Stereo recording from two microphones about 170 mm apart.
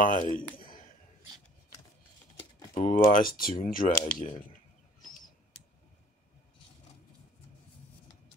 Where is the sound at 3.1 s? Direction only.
55° left (ahead or behind).